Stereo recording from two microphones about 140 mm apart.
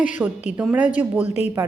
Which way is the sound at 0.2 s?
15° right (ahead or behind).